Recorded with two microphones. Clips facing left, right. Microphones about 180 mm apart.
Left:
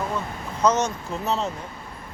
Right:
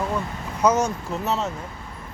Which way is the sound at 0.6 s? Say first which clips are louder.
Right 1 dB; 10° right (ahead or behind).